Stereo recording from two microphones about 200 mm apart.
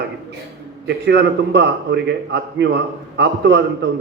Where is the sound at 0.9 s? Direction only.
60° right (ahead or behind).